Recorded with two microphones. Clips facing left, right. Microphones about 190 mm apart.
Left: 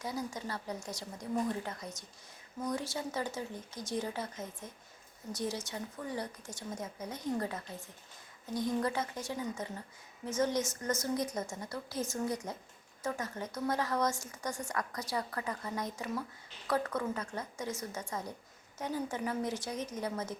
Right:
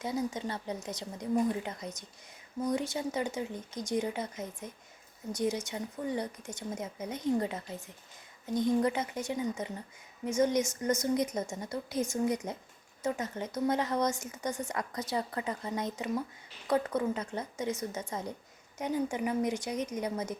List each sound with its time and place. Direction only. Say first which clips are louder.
0.0 s a woman's voice: right 5 dB; 20° right (ahead or behind)